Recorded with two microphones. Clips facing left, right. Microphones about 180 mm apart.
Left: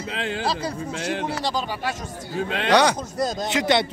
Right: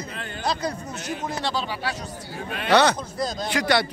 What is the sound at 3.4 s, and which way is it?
Speech, 20° left (ahead or behind).